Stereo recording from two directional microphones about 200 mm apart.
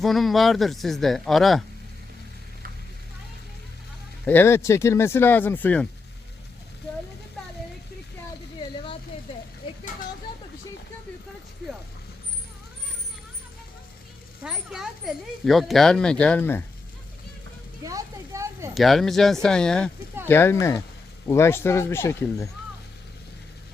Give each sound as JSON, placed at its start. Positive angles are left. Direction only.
{"t": 0.0, "sound": "speech", "side_deg": 0}
{"t": 4.3, "sound": "speech", "side_deg": 10}
{"t": 14.4, "sound": "speech", "side_deg": -5}
{"t": 17.8, "sound": "a sound", "side_deg": -15}
{"t": 18.7, "sound": "speech", "side_deg": 0}